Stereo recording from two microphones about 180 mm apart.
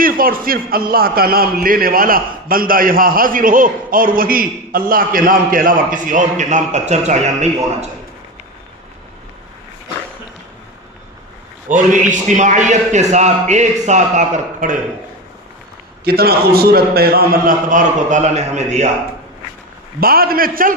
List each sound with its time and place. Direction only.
0.0 s a man's voice: 50° right (ahead or behind)
11.7 s a man's voice: 45° right (ahead or behind)
16.0 s a man's voice: 60° right (ahead or behind); by 18.9 s 40° right (ahead or behind)
20.0 s a man's voice: 55° right (ahead or behind)